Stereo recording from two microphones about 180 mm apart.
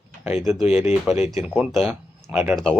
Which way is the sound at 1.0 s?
Centre (ahead or behind).